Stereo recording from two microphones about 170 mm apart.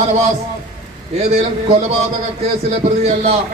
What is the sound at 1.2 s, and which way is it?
Speech, 40° right (ahead or behind).